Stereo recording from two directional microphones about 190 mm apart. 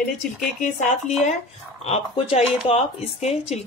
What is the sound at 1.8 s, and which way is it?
Speech, 35° left (ahead or behind).